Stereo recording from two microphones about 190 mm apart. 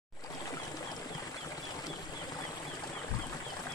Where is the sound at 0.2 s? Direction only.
20° left (ahead or behind).